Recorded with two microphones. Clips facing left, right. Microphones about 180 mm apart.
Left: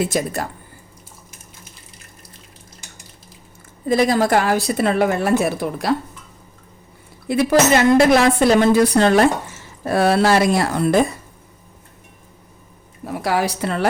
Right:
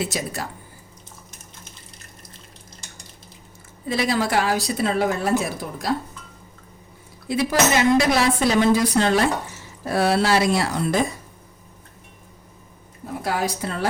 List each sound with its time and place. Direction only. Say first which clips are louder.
0.0 s speech: left 6 dB; 50° left (ahead or behind)
3.8 s a woman's voice: left 6 dB; 45° left (ahead or behind); by 5.9 s 65° left (ahead or behind)
7.3 s a woman's voice: left 5 dB; 55° left (ahead or behind)
13.2 s a woman's voice: left 5 dB; 75° left (ahead or behind)